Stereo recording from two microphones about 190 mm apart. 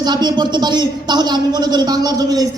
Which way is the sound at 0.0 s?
20° right (ahead or behind).